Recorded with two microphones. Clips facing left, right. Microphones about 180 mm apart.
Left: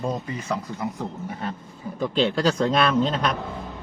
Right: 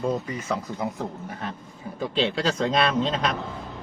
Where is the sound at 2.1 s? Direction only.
Centre (ahead or behind).